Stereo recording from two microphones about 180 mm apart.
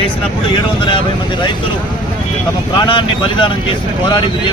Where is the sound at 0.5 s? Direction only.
25° left (ahead or behind).